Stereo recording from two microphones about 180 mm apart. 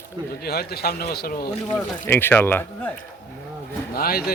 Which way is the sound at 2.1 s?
10° left (ahead or behind).